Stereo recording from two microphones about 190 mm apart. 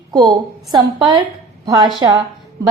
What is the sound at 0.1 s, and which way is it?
A woman's voice, 20° right (ahead or behind).